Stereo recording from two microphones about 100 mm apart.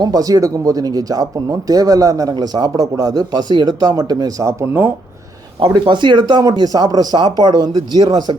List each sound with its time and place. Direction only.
0.0 s speech: 40° right (ahead or behind)
5.5 s speech: 55° right (ahead or behind)